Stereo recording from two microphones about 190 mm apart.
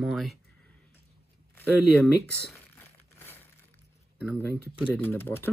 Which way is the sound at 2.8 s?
10° left (ahead or behind).